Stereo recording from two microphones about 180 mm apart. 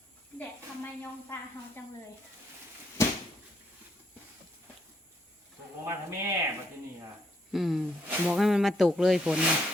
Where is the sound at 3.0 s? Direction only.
15° left (ahead or behind).